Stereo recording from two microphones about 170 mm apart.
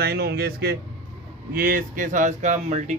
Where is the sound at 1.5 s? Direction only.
55° right (ahead or behind).